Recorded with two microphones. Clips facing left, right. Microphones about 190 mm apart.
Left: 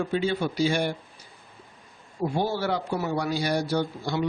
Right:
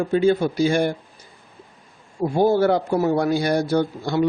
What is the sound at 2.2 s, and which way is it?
A man's voice, 50° right (ahead or behind).